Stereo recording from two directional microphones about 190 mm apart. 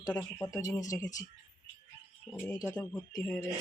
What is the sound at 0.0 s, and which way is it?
Speech, 20° left (ahead or behind).